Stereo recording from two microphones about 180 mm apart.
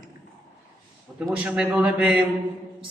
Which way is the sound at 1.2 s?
5° right (ahead or behind).